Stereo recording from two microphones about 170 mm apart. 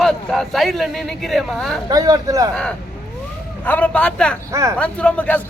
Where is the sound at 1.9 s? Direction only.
20° right (ahead or behind).